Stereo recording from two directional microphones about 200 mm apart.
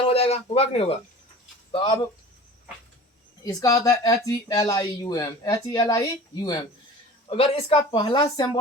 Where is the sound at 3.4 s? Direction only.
20° left (ahead or behind).